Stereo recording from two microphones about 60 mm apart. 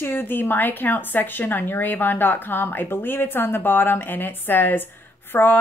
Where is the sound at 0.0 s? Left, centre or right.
Left.